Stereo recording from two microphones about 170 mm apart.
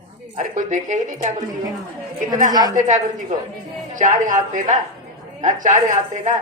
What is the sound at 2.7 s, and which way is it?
A woman's voice, 45° right (ahead or behind).